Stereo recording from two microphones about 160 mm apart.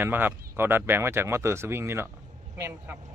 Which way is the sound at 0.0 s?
10° right (ahead or behind).